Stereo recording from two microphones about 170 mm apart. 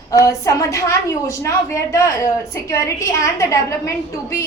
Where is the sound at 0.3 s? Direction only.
20° left (ahead or behind).